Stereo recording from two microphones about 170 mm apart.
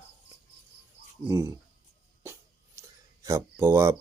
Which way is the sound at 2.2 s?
15° right (ahead or behind).